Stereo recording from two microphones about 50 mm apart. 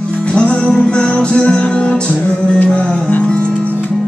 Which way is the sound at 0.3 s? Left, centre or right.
Centre.